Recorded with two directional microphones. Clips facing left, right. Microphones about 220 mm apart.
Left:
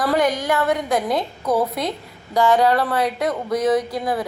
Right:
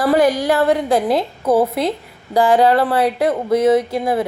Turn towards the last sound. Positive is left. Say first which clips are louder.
# right 5 dB
turn(degrees=-25)  # may be behind; listen again after turning